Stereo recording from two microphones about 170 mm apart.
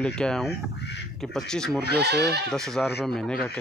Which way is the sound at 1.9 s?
75° right (ahead or behind).